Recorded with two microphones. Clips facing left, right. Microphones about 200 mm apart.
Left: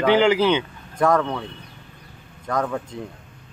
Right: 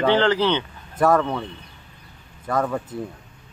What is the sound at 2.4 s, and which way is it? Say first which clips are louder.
Speech: right 1 dB; 5° right (ahead or behind).